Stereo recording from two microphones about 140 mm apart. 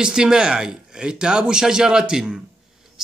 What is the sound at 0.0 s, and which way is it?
A man's voice, 5° right (ahead or behind).